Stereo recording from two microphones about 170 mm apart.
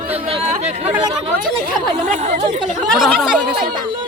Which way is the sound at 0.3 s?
40° right (ahead or behind).